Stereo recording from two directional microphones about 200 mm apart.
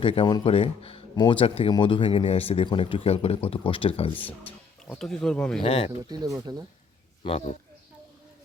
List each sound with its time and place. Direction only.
0.0 s speech: 25° left (ahead or behind)
4.1 s speech: 10° left (ahead or behind)
5.6 s speech: 30° left (ahead or behind)
6.1 s speech: 20° right (ahead or behind)
7.3 s speech: 30° left (ahead or behind)